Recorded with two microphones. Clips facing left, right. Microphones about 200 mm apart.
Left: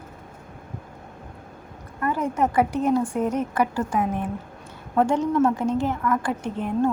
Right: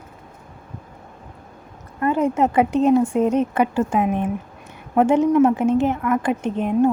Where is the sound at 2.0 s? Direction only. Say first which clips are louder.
Right 5 dB; 25° right (ahead or behind).